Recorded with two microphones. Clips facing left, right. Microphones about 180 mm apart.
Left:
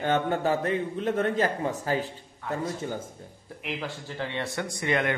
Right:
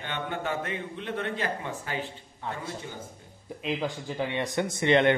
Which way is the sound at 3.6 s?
15° right (ahead or behind).